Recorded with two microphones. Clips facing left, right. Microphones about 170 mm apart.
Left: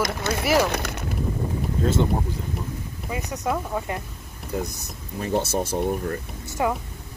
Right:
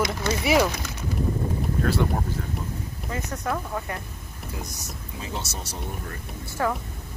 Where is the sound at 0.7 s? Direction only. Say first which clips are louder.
Left 5 dB; 65° left (ahead or behind).